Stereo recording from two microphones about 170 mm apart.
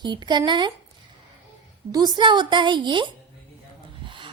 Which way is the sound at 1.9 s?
25° right (ahead or behind).